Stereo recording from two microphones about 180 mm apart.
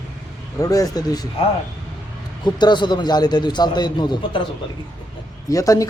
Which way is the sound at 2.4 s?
25° left (ahead or behind).